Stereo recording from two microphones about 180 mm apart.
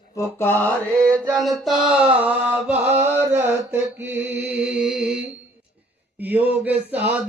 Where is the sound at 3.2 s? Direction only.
15° right (ahead or behind).